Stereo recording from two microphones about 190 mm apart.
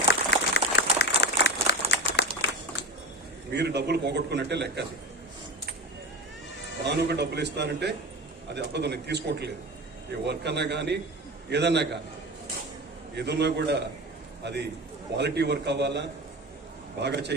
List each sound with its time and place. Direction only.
0.1 s a sound: 65° left (ahead or behind)
0.8 s crumpling: 60° left (ahead or behind)
3.5 s a man's voice: 60° right (ahead or behind)
6.8 s a man's voice: 60° right (ahead or behind)
13.1 s a man's voice: 60° right (ahead or behind)